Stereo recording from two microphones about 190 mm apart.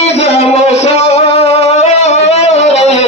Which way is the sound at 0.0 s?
35° left (ahead or behind).